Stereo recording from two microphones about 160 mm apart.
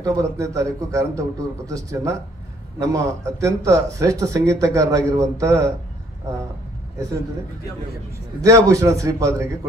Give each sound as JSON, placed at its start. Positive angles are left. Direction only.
{"t": 0.0, "sound": "speech", "side_deg": -20}
{"t": 8.4, "sound": "speech", "side_deg": -20}